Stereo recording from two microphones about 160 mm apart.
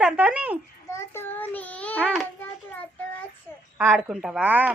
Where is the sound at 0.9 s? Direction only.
15° left (ahead or behind).